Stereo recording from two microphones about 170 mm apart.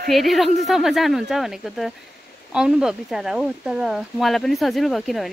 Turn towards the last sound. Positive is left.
turn(degrees=0)  # may be behind; listen again after turning